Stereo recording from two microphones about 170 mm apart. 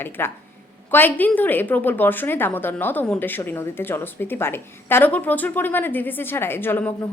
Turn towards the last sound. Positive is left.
turn(degrees=10)  # may be behind; listen again after turning